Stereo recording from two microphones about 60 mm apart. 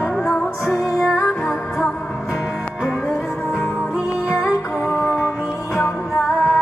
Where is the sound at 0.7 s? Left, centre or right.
Centre.